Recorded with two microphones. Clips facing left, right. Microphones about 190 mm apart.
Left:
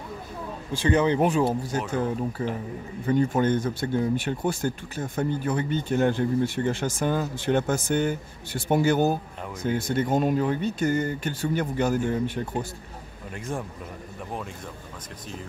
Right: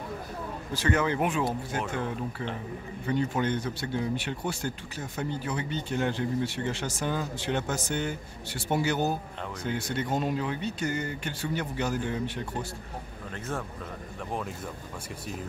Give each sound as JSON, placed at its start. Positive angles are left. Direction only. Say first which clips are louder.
{"t": 0.9, "sound": "speech", "louder": "left 7 dB", "side_deg": 20}
{"t": 1.2, "sound": "speech", "louder": "left 6 dB", "side_deg": 35}